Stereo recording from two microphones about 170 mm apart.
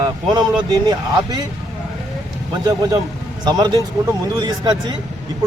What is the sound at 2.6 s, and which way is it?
A man's voice, 20° right (ahead or behind).